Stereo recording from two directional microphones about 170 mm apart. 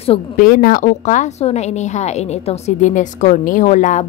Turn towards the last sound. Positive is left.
turn(degrees=45)  # may be behind; listen again after turning